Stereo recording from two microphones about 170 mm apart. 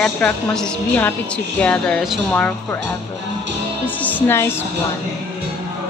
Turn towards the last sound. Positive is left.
turn(degrees=15)  # may be behind; listen again after turning